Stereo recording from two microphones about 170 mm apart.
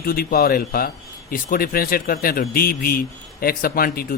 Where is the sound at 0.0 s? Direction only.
60° left (ahead or behind).